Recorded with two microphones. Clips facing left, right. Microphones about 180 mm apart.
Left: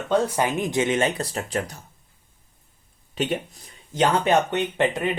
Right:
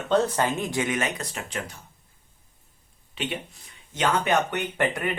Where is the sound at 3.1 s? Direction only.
40° left (ahead or behind).